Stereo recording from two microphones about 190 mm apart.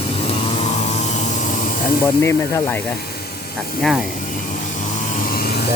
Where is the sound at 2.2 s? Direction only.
15° left (ahead or behind).